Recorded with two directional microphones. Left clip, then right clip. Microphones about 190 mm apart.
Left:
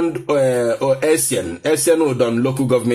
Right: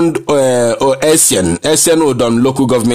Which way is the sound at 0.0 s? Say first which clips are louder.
Right 5 dB; 50° right (ahead or behind).